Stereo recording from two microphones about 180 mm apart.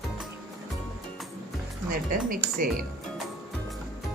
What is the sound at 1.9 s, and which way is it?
Music, 50° right (ahead or behind).